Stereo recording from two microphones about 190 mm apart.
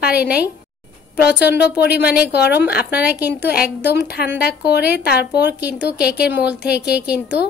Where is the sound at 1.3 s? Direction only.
60° left (ahead or behind).